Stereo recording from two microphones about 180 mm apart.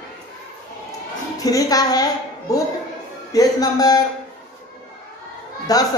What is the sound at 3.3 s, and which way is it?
Speech, 20° left (ahead or behind).